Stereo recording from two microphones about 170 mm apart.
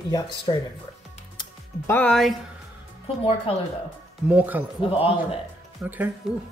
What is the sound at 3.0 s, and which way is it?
Speech, 35° left (ahead or behind).